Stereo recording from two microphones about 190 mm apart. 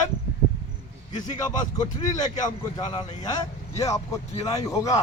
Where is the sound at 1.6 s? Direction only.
20° left (ahead or behind).